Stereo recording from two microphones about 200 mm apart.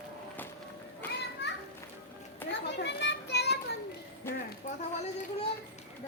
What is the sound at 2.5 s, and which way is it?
Children playing, 60° left (ahead or behind).